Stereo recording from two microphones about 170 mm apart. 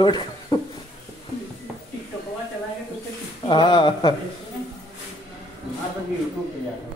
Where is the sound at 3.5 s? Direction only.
30° left (ahead or behind).